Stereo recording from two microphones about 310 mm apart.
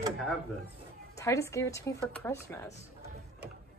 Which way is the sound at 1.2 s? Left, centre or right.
Centre.